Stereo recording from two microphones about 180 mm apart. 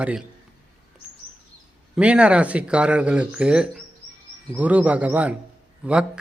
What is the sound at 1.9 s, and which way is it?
A man's voice, 5° right (ahead or behind).